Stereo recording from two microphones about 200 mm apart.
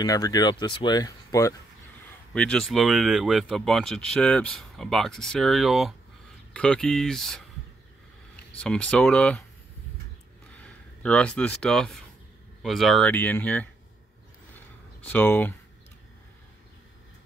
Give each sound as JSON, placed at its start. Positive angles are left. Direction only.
{"t": 0.0, "sound": "speech", "side_deg": 20}
{"t": 2.3, "sound": "speech", "side_deg": 5}
{"t": 8.5, "sound": "speech", "side_deg": 5}
{"t": 10.6, "sound": "speech", "side_deg": 5}
{"t": 15.0, "sound": "speech", "side_deg": 10}